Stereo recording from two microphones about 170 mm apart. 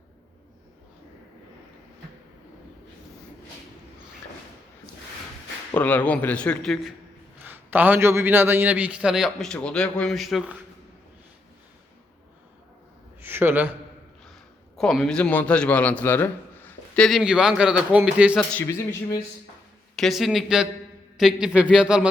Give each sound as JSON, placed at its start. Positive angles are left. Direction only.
{"t": 5.7, "sound": "a man's voice", "side_deg": 10}
{"t": 7.4, "sound": "a man's voice", "side_deg": -10}
{"t": 13.2, "sound": "a sound", "side_deg": -10}
{"t": 14.8, "sound": "a man's voice", "side_deg": 0}
{"t": 18.3, "sound": "a man's voice", "side_deg": 10}
{"t": 20.0, "sound": "a man's voice", "side_deg": 0}